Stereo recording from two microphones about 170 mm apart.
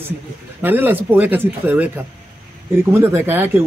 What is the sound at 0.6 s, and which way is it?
Speech, 10° right (ahead or behind).